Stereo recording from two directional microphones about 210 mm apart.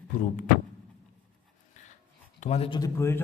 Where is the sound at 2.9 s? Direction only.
10° left (ahead or behind).